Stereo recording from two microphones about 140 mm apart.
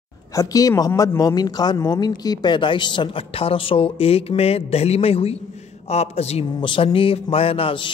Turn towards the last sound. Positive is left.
turn(degrees=40)  # may be behind; listen again after turning